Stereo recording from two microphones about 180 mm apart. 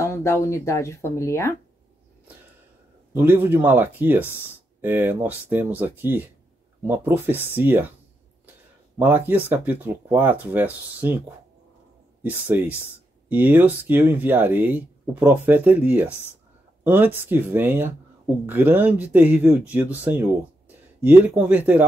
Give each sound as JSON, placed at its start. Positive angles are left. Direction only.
{"t": 0.0, "sound": "speech", "side_deg": 15}
{"t": 3.1, "sound": "speech", "side_deg": -10}
{"t": 8.5, "sound": "a sound", "side_deg": -10}
{"t": 9.5, "sound": "speech", "side_deg": -10}